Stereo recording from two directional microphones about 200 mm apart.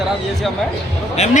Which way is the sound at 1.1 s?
35° left (ahead or behind).